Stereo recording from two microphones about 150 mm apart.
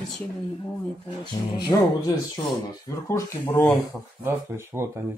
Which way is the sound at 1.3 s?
30° left (ahead or behind).